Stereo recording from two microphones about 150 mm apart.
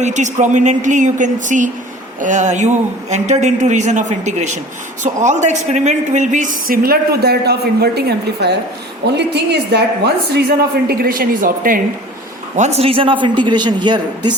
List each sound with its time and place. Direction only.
0.0 s a man's voice: 55° right (ahead or behind); by 10.4 s 90° right
10.8 s a woman's voice: 80° right
12.5 s a man's voice: 50° right (ahead or behind); by 14.3 s 30° right (ahead or behind)